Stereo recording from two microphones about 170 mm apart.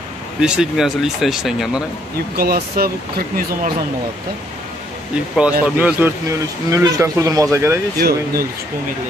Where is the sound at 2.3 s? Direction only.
65° right (ahead or behind).